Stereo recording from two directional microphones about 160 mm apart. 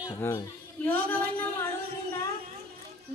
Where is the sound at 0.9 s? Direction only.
10° left (ahead or behind).